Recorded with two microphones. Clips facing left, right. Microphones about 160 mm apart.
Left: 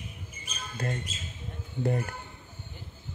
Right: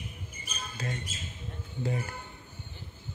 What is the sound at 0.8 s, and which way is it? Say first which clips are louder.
Speech: left 4 dB; 55° left (ahead or behind).